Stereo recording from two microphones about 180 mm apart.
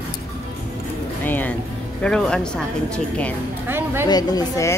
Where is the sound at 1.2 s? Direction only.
10° left (ahead or behind).